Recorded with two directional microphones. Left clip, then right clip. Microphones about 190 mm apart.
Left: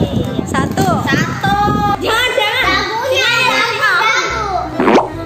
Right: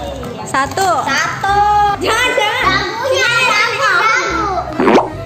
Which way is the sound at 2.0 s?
Centre (ahead or behind).